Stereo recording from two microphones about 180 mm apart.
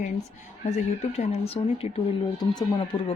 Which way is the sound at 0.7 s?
40° left (ahead or behind).